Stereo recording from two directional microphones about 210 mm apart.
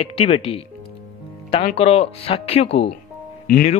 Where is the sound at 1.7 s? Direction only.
30° left (ahead or behind).